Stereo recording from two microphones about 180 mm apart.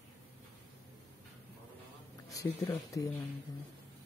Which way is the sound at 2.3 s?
15° left (ahead or behind).